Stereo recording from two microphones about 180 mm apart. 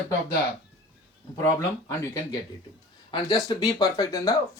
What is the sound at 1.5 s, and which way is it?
Speech, 15° left (ahead or behind).